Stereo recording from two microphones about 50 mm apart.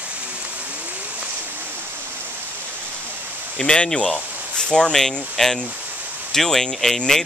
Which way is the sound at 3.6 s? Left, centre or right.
Centre.